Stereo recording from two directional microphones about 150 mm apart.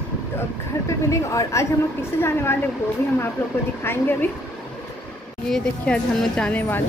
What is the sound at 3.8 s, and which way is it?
Speech, 15° left (ahead or behind).